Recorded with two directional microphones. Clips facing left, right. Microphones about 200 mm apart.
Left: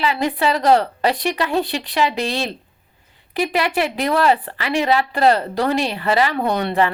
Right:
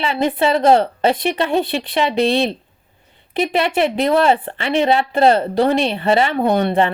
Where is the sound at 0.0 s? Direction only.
25° right (ahead or behind).